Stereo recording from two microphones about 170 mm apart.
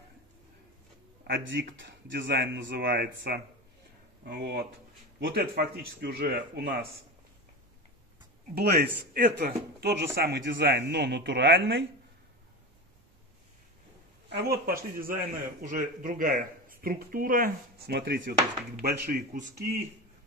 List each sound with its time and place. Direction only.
1.2 s speech: 90° right
5.2 s speech: 65° right (ahead or behind); by 6.9 s 80° right
8.5 s speech: 70° right (ahead or behind)
10.5 s speech: 70° right (ahead or behind)
14.3 s speech: 65° right (ahead or behind)
18.8 s speech: 55° right (ahead or behind)